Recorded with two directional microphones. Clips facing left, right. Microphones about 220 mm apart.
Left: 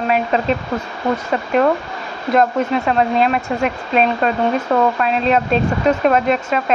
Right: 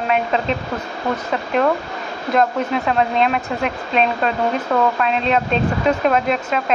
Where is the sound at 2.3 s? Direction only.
Centre (ahead or behind).